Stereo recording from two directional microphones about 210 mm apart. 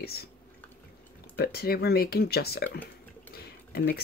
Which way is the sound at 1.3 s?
50° left (ahead or behind).